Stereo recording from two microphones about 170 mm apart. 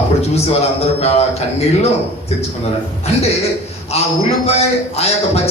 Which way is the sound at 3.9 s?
40° left (ahead or behind).